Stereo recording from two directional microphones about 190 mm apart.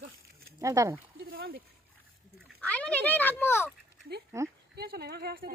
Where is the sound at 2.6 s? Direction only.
5° left (ahead or behind).